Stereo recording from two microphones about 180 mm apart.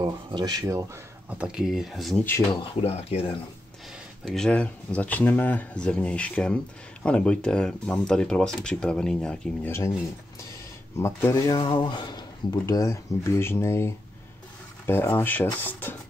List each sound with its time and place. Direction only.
0.0 s speech: 25° right (ahead or behind)
1.4 s speech: 5° right (ahead or behind)
2.5 s speech: 35° left (ahead or behind)
4.2 s speech: centre (ahead or behind)
11.0 s speech: 15° left (ahead or behind)